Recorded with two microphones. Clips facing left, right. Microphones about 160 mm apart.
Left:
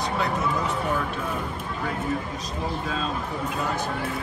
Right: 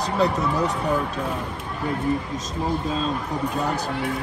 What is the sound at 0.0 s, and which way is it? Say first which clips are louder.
Speech: right 4 dB; 35° right (ahead or behind).